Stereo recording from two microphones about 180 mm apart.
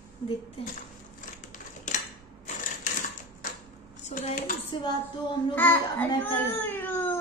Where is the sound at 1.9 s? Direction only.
45° left (ahead or behind).